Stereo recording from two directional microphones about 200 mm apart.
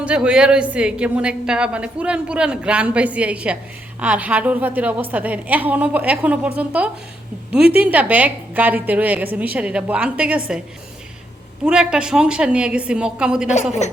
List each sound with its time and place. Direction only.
0.0 s a woman's voice: 5° right (ahead or behind)
11.6 s a woman's voice: 5° right (ahead or behind)
13.8 s speech: 35° left (ahead or behind)